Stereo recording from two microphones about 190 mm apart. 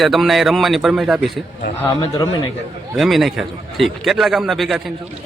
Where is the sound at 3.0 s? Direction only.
Centre (ahead or behind).